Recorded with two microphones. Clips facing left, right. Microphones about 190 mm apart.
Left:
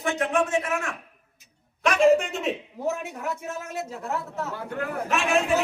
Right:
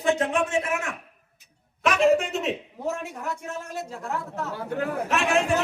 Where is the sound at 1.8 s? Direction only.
Centre (ahead or behind).